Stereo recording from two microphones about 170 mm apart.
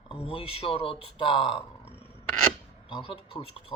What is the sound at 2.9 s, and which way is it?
Speech, 30° left (ahead or behind).